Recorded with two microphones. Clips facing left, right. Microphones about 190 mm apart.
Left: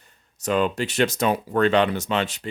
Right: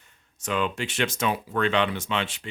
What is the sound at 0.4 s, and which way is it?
Speech, 40° left (ahead or behind).